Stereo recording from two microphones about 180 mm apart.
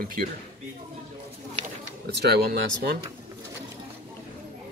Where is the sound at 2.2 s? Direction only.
65° right (ahead or behind).